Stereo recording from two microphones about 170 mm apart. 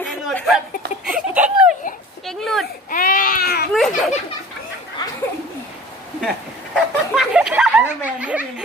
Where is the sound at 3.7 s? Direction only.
Centre (ahead or behind).